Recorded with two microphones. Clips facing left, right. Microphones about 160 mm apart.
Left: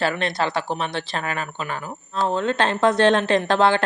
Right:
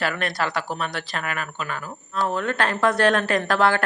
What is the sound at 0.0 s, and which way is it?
Speech, 25° left (ahead or behind).